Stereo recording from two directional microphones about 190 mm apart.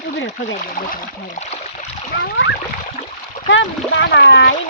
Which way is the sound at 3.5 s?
70° left (ahead or behind).